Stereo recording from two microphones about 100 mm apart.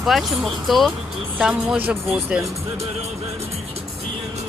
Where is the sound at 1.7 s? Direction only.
15° right (ahead or behind).